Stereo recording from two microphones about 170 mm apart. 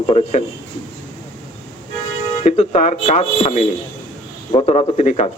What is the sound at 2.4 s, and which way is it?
Speech, 40° left (ahead or behind).